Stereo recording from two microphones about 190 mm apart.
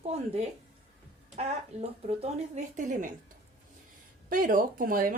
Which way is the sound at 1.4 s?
35° right (ahead or behind).